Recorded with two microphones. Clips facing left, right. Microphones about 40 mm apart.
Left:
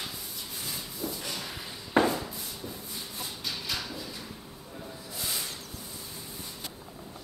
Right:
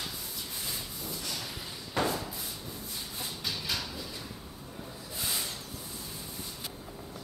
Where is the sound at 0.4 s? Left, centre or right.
Centre.